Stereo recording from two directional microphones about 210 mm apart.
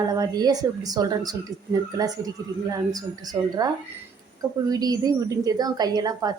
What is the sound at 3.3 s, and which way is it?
Speech, 20° right (ahead or behind).